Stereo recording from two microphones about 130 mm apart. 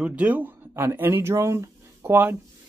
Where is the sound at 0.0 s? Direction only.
10° right (ahead or behind).